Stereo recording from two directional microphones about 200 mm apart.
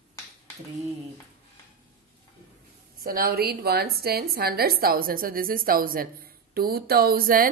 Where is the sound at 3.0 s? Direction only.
50° right (ahead or behind).